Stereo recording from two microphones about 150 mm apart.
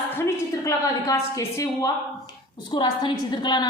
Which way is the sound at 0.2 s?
20° left (ahead or behind).